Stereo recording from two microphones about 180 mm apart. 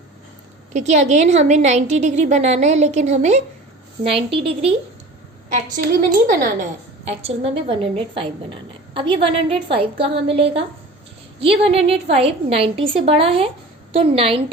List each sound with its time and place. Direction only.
0.7 s a woman's voice: 40° right (ahead or behind)
5.6 s a woman's voice: 50° right (ahead or behind)
7.1 s a woman's voice: 35° right (ahead or behind)